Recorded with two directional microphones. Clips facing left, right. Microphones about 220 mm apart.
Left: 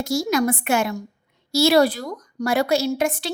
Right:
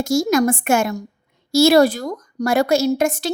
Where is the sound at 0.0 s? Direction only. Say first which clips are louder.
Right 4 dB; 45° right (ahead or behind).